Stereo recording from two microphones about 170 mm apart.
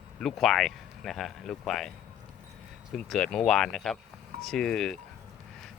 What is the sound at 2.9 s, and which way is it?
Speech, centre (ahead or behind).